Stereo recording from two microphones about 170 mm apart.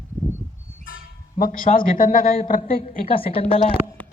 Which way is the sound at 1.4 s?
55° left (ahead or behind).